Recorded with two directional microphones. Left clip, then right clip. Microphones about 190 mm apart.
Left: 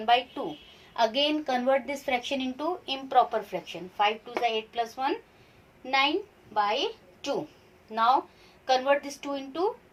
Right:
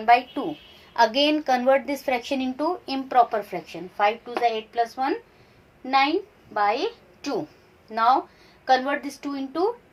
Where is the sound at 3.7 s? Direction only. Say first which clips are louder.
Right 4 dB; 25° right (ahead or behind).